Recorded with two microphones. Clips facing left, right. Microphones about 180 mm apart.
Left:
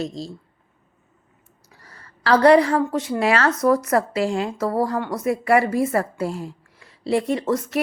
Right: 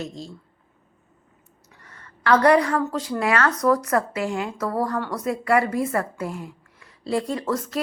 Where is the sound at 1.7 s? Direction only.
35° left (ahead or behind).